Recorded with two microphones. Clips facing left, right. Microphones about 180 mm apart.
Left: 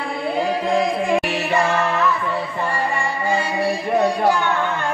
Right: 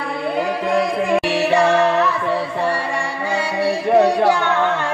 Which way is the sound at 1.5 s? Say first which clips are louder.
Right 4 dB; 75° right (ahead or behind).